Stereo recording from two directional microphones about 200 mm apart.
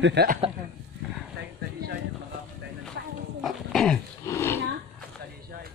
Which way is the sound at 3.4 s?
Centre (ahead or behind).